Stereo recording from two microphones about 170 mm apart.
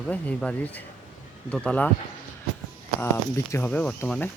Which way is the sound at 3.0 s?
15° left (ahead or behind).